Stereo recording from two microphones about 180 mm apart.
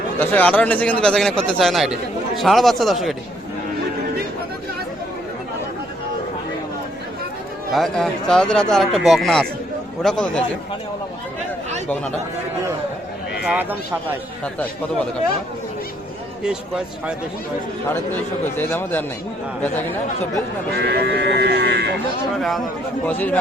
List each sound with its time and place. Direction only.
0.2 s a man's voice: 10° left (ahead or behind)
7.7 s a man's voice: centre (ahead or behind)
13.4 s speech: 10° right (ahead or behind)
17.8 s speech: 10° left (ahead or behind)
20.7 s speech: 65° right (ahead or behind)
22.4 s a man's voice: centre (ahead or behind)